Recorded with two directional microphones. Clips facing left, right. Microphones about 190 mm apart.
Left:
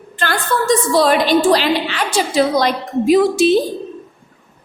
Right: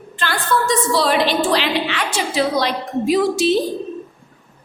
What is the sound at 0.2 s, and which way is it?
A woman's voice, 50° left (ahead or behind).